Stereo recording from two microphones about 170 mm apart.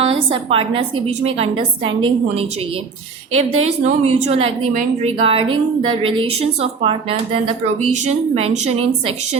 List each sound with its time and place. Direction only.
0.0 s a woman's voice: 35° right (ahead or behind)
8.4 s a woman's voice: 35° right (ahead or behind)